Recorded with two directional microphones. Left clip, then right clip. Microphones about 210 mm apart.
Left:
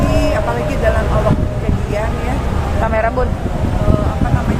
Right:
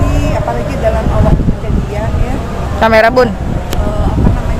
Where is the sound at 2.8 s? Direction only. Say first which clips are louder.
Right 10 dB; 60° right (ahead or behind).